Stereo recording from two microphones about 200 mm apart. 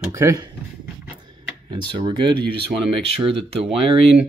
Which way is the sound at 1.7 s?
25° right (ahead or behind).